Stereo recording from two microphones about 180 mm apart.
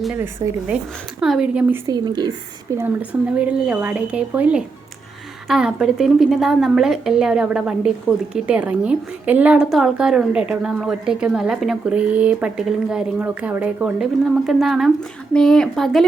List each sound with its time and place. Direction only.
0.0 s a woman's voice: 5° right (ahead or behind)
1.9 s speech: 25° right (ahead or behind)
2.7 s a woman's voice: 10° right (ahead or behind)